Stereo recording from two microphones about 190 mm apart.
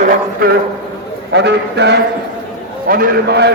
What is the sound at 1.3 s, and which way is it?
Speech, 65° right (ahead or behind).